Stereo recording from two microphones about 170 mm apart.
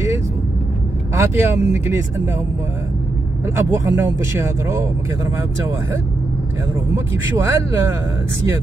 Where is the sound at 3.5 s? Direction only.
15° right (ahead or behind).